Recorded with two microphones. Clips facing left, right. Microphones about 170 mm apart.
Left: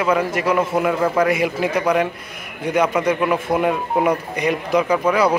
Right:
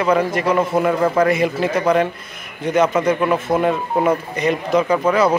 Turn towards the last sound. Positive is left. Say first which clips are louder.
# right 1 dB
turn(degrees=10)  # may be behind; listen again after turning